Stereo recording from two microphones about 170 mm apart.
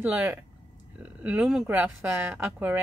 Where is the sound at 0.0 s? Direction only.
10° right (ahead or behind).